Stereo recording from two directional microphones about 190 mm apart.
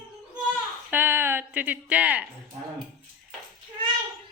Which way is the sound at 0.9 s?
10° right (ahead or behind).